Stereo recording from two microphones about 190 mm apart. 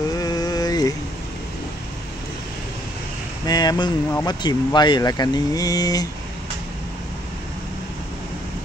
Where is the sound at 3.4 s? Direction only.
20° left (ahead or behind).